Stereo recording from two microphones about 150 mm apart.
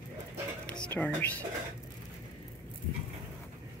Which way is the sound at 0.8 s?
10° left (ahead or behind).